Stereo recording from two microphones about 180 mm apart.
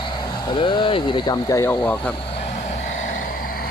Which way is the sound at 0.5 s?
25° left (ahead or behind).